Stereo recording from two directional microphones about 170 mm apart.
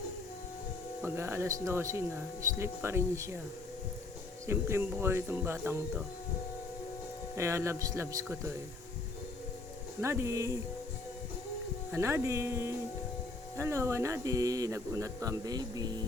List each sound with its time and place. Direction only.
1.0 s speech: 15° right (ahead or behind)
4.4 s speech: 15° right (ahead or behind)
7.3 s speech: 15° right (ahead or behind)
10.0 s speech: 15° right (ahead or behind)
11.9 s speech: 15° right (ahead or behind)